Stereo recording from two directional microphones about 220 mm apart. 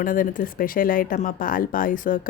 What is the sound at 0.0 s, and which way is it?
Speech, 40° left (ahead or behind).